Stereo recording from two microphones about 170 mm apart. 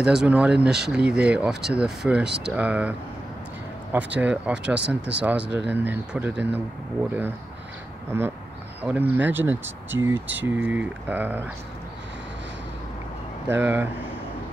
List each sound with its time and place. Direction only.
0.0 s speech: 5° right (ahead or behind)
2.2 s speech: 80° right
2.5 s speech: 10° right (ahead or behind)
3.9 s speech: 10° right (ahead or behind)
8.8 s speech: 10° right (ahead or behind)
13.5 s speech: 10° right (ahead or behind)